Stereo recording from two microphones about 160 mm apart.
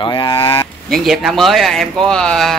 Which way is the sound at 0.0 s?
30° left (ahead or behind).